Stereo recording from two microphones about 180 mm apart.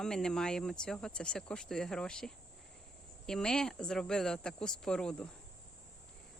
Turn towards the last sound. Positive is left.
turn(degrees=5)  # may be behind; listen again after turning